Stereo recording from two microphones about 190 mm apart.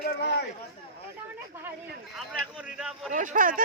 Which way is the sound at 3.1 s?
45° right (ahead or behind).